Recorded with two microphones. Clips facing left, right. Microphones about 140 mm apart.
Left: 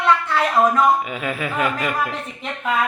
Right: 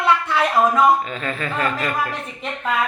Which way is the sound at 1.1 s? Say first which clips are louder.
Left 1 dB; 10° left (ahead or behind).